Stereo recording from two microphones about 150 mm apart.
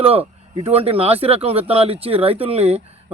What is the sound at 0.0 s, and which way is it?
Speech, 40° right (ahead or behind).